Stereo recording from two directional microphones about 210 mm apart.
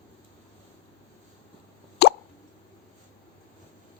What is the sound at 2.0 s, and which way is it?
Plop, 50° left (ahead or behind).